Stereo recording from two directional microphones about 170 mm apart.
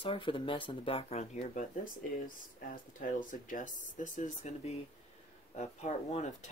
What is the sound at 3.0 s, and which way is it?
Speech, 50° left (ahead or behind).